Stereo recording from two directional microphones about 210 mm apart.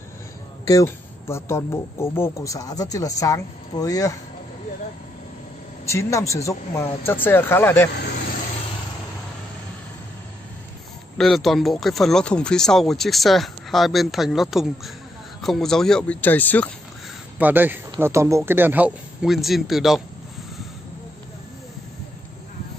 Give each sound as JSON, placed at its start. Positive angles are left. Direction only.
{"t": 0.7, "sound": "speech", "side_deg": 15}
{"t": 5.9, "sound": "speech", "side_deg": 15}
{"t": 11.1, "sound": "speech", "side_deg": 0}
{"t": 17.4, "sound": "a man's voice", "side_deg": -10}